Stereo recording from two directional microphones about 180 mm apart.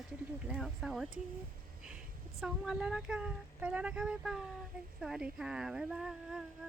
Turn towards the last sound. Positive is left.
turn(degrees=-5)  # may be behind; listen again after turning